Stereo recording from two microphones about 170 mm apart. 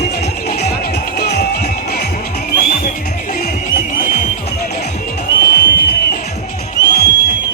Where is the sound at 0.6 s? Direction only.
70° left (ahead or behind); by 4.3 s 50° left (ahead or behind).